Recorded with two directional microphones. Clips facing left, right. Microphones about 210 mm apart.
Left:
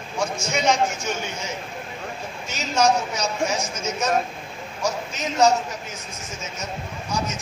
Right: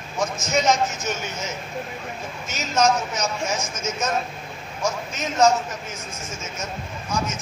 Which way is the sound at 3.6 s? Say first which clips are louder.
Left 1 dB; 35° left (ahead or behind).